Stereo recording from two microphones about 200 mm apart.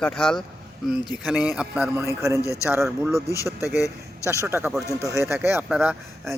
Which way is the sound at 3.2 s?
15° left (ahead or behind).